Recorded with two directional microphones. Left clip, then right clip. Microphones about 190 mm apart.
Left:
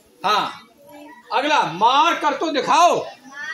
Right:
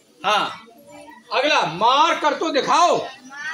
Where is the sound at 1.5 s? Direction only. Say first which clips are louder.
Left 2 dB; 35° left (ahead or behind).